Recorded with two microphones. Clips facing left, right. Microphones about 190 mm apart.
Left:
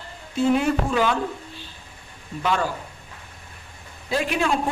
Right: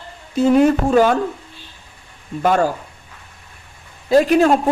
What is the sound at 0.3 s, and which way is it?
Speech, 45° right (ahead or behind).